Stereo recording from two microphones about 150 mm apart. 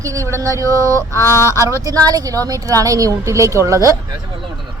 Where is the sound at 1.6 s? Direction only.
20° right (ahead or behind).